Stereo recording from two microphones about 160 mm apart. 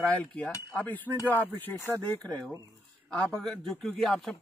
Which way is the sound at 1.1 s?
10° left (ahead or behind).